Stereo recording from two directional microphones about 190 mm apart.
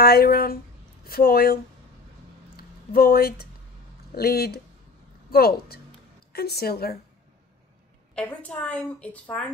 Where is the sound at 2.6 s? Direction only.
55° left (ahead or behind).